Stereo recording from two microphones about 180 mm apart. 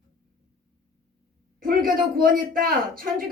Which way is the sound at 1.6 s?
50° right (ahead or behind).